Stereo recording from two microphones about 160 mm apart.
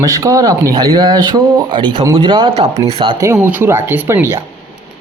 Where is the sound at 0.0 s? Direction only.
20° right (ahead or behind).